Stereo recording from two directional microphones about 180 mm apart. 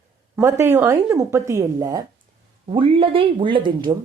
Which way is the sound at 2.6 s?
30° right (ahead or behind).